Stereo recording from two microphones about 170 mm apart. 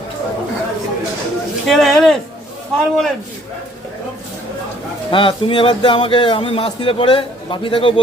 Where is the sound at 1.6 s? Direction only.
Centre (ahead or behind).